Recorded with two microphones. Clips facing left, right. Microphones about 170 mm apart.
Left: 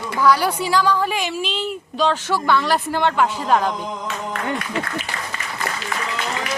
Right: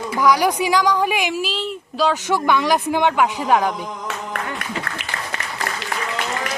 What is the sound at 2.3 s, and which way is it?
A woman's voice, 15° right (ahead or behind).